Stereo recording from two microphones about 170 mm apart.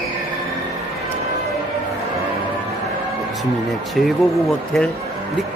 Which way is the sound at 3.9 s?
Centre (ahead or behind).